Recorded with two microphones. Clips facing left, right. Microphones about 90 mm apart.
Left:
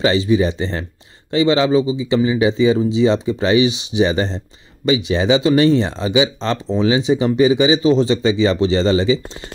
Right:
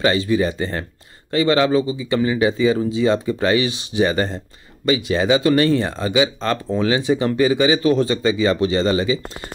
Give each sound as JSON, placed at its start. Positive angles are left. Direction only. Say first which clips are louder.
{"t": 0.1, "sound": "speech", "louder": "left 3 dB", "side_deg": 20}